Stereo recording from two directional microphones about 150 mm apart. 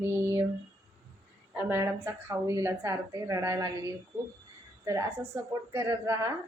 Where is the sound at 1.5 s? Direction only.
15° right (ahead or behind).